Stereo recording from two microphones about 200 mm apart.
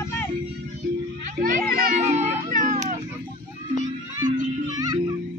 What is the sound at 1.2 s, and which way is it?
Music, 40° right (ahead or behind).